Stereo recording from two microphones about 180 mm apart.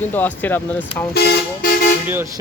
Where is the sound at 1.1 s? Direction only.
65° left (ahead or behind).